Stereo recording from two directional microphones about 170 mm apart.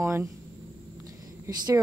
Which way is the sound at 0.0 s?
15° right (ahead or behind).